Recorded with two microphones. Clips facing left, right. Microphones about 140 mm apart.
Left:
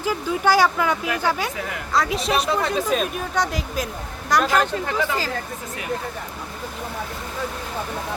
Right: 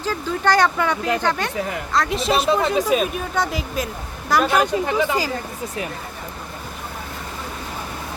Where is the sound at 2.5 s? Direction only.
15° right (ahead or behind).